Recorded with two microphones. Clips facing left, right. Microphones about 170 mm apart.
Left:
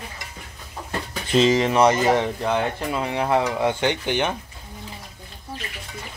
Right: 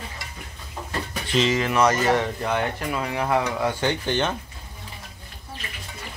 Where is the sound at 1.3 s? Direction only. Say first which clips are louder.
Left 4 dB; 30° left (ahead or behind).